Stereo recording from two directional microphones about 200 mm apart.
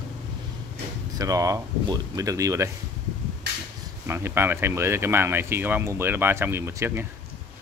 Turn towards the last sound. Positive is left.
turn(degrees=-15)  # may be behind; listen again after turning